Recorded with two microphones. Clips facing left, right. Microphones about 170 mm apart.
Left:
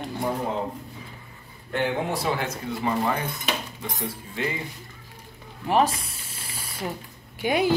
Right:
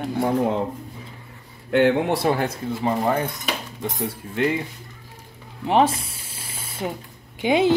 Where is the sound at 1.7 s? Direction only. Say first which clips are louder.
Right 8 dB; 80° right.